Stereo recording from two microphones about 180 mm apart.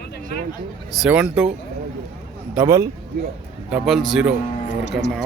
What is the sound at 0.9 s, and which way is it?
Speech, 5° right (ahead or behind).